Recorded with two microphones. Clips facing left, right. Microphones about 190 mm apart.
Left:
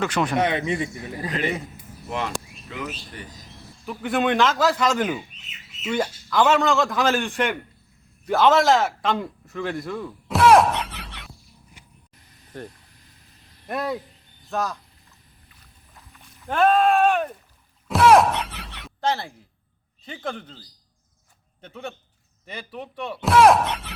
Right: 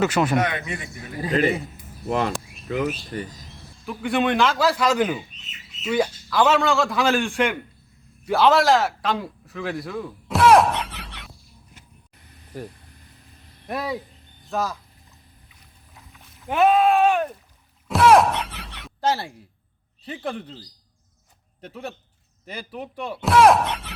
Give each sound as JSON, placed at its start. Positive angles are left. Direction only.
{"t": 0.0, "sound": "a man's voice", "side_deg": -5}
{"t": 0.3, "sound": "speech", "side_deg": 25}
{"t": 2.0, "sound": "speech", "side_deg": -40}
{"t": 3.8, "sound": "a man's voice", "side_deg": 0}
{"t": 12.5, "sound": "a man's voice", "side_deg": -5}
{"t": 16.0, "sound": "rowboat", "side_deg": -5}
{"t": 17.8, "sound": "a sound", "side_deg": 0}
{"t": 20.1, "sound": "a man's voice", "side_deg": -5}
{"t": 21.6, "sound": "a man's voice", "side_deg": -5}